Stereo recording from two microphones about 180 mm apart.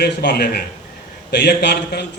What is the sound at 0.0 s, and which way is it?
A man's voice, 65° left (ahead or behind).